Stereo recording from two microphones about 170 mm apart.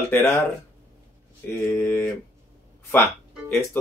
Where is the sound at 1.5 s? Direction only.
15° left (ahead or behind).